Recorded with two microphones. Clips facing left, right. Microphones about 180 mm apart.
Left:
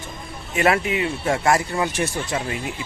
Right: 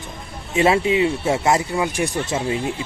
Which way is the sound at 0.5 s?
25° right (ahead or behind).